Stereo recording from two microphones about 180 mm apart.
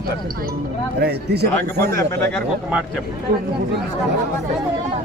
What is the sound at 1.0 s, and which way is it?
Speech, 65° right (ahead or behind).